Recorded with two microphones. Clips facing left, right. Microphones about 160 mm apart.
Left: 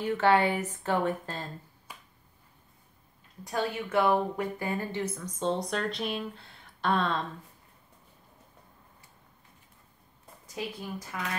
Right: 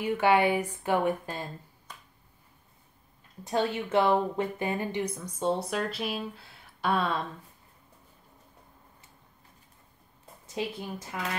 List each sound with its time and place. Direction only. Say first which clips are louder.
0.0 s a woman's voice: right 1 dB; 10° right (ahead or behind)
1.9 s finger snapping: even; 10° left (ahead or behind)
3.4 s a woman's voice: right 3 dB; 25° right (ahead or behind); by 7.2 s 10° right (ahead or behind)
10.4 s a woman's voice: right 3 dB; 25° right (ahead or behind)